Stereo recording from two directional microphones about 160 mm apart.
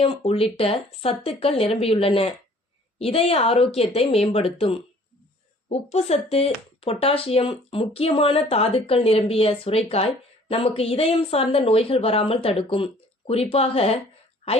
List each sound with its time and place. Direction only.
0.0 s speech: 35° left (ahead or behind)